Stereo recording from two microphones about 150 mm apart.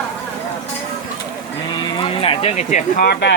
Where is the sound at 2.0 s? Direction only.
35° left (ahead or behind); by 3.2 s 80° left.